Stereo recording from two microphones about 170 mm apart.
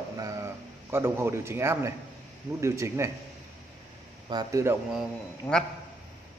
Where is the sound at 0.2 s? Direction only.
20° right (ahead or behind).